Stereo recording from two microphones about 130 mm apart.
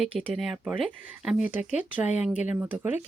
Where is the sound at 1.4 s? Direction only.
15° right (ahead or behind).